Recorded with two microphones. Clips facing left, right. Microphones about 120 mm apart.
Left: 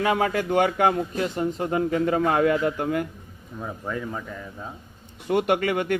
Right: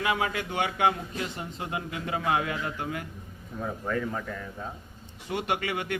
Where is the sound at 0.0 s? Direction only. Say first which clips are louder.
Left 6 dB; 40° left (ahead or behind).